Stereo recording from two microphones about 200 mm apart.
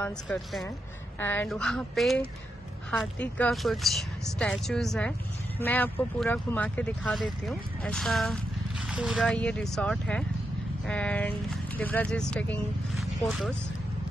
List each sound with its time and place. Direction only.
0.0 s speech: 5° left (ahead or behind)